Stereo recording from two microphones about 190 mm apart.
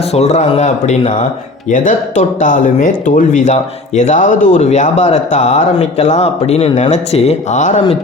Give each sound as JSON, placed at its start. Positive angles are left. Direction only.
{"t": 0.1, "sound": "speech", "side_deg": 35}